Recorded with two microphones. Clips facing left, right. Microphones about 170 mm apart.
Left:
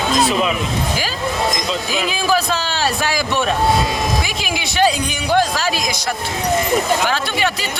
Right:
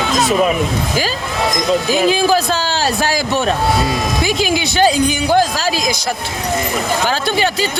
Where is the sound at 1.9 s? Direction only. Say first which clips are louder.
Right 4 dB; 35° right (ahead or behind).